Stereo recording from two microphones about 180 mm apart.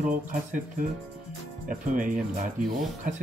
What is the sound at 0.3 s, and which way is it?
Speech, 45° right (ahead or behind).